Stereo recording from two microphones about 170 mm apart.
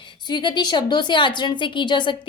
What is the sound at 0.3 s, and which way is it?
A woman's voice, 25° left (ahead or behind).